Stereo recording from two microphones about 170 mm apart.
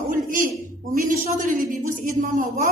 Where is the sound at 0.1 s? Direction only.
55° right (ahead or behind).